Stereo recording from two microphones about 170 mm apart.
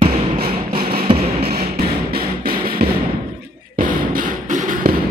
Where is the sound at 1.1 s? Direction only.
35° right (ahead or behind).